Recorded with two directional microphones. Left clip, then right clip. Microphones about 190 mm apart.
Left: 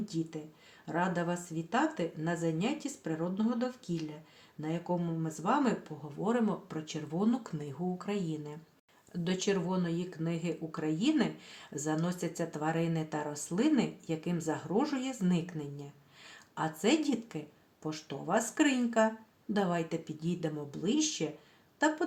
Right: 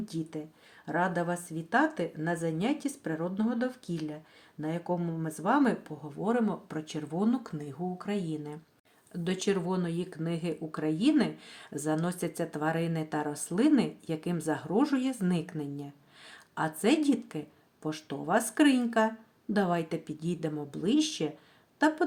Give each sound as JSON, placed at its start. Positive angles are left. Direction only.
{"t": 0.0, "sound": "speech", "side_deg": -20}